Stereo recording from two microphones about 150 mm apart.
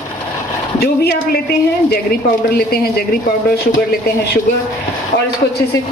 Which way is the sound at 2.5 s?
90° left.